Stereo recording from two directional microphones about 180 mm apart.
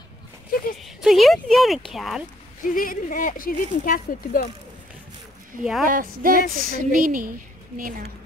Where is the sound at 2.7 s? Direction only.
50° left (ahead or behind).